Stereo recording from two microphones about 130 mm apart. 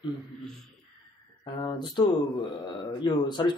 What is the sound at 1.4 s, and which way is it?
Speech, 35° left (ahead or behind).